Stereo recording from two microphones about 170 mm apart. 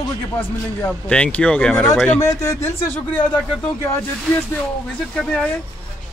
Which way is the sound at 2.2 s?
20° left (ahead or behind).